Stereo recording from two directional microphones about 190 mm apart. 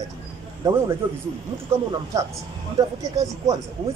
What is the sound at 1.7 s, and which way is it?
A man's voice, 15° right (ahead or behind).